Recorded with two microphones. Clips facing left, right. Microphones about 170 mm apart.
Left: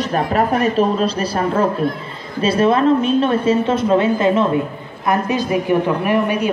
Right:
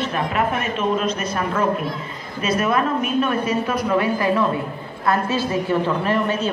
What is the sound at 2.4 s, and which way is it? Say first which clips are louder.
A woman's voice: left 6 dB; 30° left (ahead or behind).